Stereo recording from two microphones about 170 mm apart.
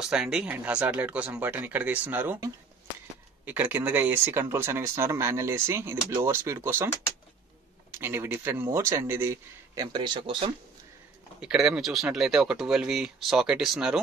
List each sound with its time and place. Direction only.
0.0 s speech: 5° right (ahead or behind)
7.9 s speech: 15° right (ahead or behind); by 10.5 s 30° right (ahead or behind)
11.4 s speech: 5° right (ahead or behind)